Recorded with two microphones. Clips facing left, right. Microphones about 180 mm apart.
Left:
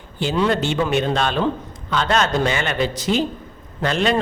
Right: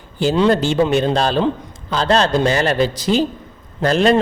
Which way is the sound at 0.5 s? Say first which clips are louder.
Right 4 dB; 35° right (ahead or behind).